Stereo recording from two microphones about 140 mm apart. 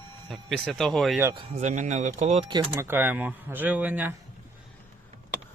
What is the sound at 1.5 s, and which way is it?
Speech, 55° right (ahead or behind).